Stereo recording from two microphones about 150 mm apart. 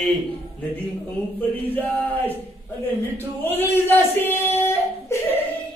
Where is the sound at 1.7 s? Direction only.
10° left (ahead or behind).